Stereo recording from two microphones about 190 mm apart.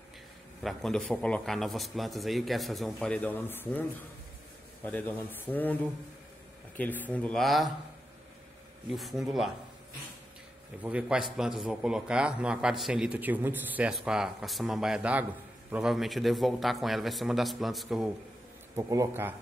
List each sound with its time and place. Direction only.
0.7 s a man's voice: 5° left (ahead or behind)
4.8 s speech: 10° left (ahead or behind)
8.9 s a man's voice: centre (ahead or behind)
10.8 s a man's voice: 5° right (ahead or behind)
18.8 s speech: 15° right (ahead or behind)